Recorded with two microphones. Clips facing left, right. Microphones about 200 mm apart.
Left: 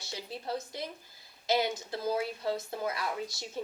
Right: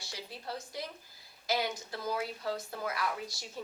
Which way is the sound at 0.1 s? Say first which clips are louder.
Left 5 dB; 20° left (ahead or behind).